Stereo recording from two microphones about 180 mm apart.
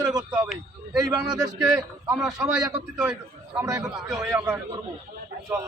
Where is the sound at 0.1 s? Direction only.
20° right (ahead or behind).